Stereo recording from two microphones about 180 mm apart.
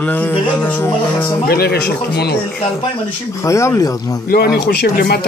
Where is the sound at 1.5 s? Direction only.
60° left (ahead or behind).